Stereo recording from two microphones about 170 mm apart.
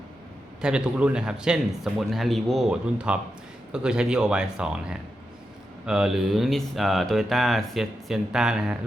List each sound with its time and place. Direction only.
0.6 s speech: 5° right (ahead or behind)